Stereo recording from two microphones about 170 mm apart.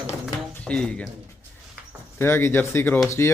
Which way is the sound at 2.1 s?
15° left (ahead or behind).